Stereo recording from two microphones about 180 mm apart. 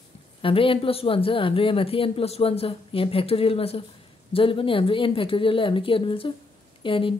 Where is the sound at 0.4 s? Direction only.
30° left (ahead or behind).